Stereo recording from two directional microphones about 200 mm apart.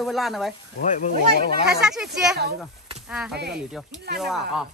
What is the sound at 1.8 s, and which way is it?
Speech, 5° right (ahead or behind).